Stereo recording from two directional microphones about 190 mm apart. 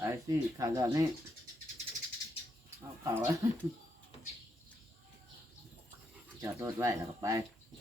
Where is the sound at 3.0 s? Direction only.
15° right (ahead or behind).